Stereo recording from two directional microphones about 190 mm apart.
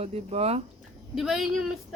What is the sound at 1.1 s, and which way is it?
Speech, centre (ahead or behind).